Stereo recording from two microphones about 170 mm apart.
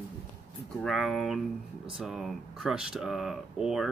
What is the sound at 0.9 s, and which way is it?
Speech, centre (ahead or behind).